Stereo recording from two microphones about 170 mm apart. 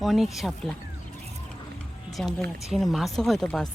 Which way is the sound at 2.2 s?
5° left (ahead or behind).